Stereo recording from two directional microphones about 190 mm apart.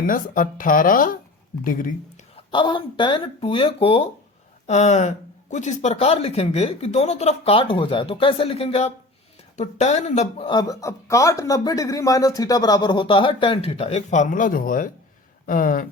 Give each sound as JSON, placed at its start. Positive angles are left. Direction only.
{"t": 0.1, "sound": "speech", "side_deg": 45}
{"t": 2.3, "sound": "speech", "side_deg": 25}